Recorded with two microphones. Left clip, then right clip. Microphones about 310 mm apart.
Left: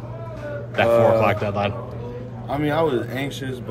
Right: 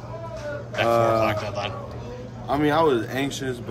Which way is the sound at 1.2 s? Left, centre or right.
Centre.